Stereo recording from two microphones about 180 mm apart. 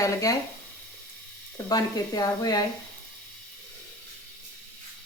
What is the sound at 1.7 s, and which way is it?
Speech, 20° left (ahead or behind).